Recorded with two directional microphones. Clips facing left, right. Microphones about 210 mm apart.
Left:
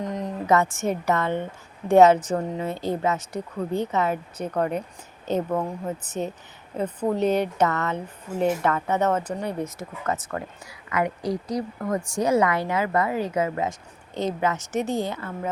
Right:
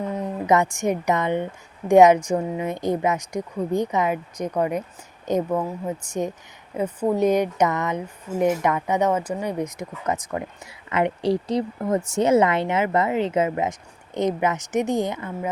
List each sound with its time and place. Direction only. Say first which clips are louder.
0.0 s speech: right 2 dB; 10° right (ahead or behind)